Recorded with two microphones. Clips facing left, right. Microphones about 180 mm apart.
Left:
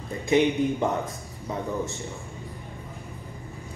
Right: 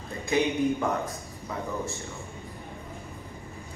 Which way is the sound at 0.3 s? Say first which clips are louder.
Left 3 dB; 25° left (ahead or behind).